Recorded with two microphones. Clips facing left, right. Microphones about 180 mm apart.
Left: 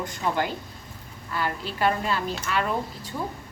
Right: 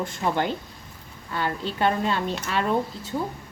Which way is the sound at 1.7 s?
25° right (ahead or behind).